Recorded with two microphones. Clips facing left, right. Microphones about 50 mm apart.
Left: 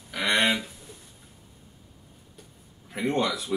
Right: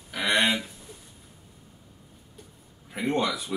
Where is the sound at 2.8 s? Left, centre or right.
Centre.